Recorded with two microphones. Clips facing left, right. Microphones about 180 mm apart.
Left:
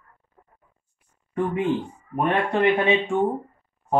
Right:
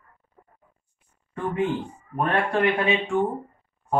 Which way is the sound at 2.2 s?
20° left (ahead or behind).